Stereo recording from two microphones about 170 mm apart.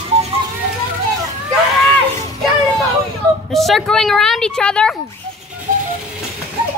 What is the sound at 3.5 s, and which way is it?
A woman's voice, centre (ahead or behind).